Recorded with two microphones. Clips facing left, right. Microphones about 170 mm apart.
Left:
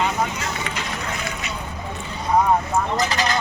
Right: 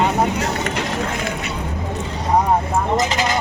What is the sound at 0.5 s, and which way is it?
Vehicle, 45° right (ahead or behind).